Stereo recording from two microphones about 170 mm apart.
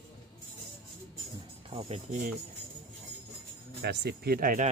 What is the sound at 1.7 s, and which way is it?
Music, 35° right (ahead or behind).